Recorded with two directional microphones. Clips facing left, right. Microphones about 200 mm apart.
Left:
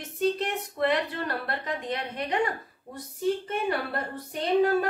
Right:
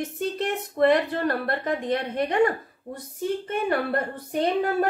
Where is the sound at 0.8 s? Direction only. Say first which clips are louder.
Right 7 dB; 45° right (ahead or behind).